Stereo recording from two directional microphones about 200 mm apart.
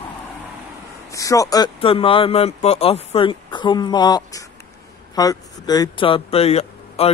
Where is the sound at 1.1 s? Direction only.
15° left (ahead or behind).